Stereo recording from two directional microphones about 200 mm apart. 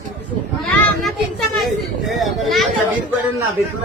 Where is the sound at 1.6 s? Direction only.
Centre (ahead or behind).